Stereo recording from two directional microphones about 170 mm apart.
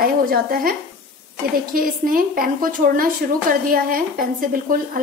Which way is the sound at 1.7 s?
55° right (ahead or behind).